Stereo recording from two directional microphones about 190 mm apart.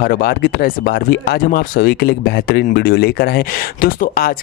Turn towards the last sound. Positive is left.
turn(degrees=50)  # may be behind; listen again after turning